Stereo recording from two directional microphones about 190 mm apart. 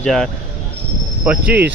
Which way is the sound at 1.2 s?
10° right (ahead or behind).